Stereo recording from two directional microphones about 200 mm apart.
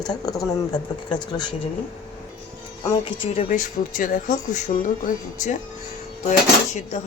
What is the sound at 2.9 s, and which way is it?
Speech, 35° left (ahead or behind).